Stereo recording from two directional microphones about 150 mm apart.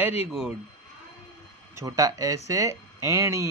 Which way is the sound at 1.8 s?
20° right (ahead or behind).